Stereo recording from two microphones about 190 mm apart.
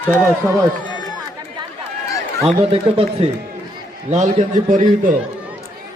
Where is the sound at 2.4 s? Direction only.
30° right (ahead or behind).